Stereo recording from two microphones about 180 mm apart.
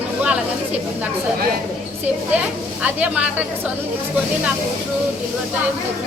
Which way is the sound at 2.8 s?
5° right (ahead or behind).